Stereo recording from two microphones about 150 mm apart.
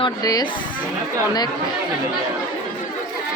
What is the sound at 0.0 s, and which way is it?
Speech, 25° left (ahead or behind).